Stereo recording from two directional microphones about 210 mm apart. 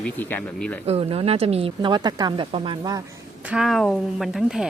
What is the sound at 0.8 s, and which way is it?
Speech, 30° right (ahead or behind).